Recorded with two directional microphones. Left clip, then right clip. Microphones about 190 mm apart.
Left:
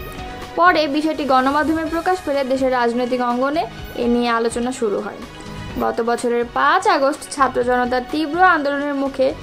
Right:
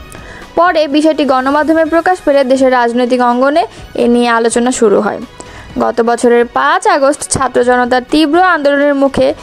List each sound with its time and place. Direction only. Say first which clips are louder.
0.6 s a woman's voice: right 5 dB; 40° right (ahead or behind)